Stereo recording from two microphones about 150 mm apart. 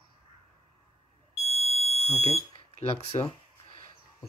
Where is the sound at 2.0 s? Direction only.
40° left (ahead or behind).